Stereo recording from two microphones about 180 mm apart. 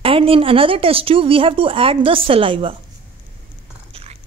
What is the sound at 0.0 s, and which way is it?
Speech, 30° right (ahead or behind).